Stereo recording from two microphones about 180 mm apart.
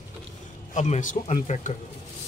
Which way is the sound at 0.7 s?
40° left (ahead or behind).